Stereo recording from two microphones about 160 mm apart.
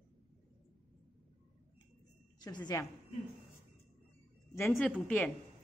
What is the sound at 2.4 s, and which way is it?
Speech, 25° left (ahead or behind).